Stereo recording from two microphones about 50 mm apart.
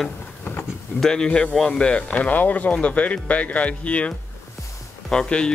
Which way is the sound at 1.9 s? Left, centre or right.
Left.